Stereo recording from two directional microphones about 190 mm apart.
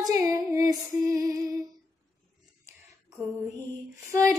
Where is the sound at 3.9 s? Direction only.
15° right (ahead or behind).